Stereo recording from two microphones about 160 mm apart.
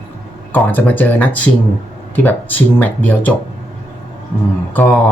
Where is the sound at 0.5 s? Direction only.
10° left (ahead or behind).